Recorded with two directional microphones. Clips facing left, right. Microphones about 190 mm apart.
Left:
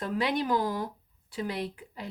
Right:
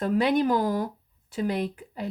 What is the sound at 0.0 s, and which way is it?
A woman's voice, 45° right (ahead or behind).